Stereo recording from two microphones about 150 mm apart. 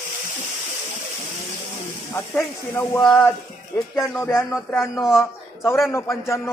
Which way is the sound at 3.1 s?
15° left (ahead or behind).